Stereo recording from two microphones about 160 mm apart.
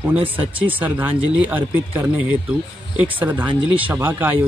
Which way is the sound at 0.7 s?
10° right (ahead or behind).